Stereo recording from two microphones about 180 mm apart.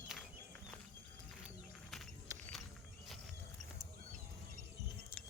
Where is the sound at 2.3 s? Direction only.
20° right (ahead or behind).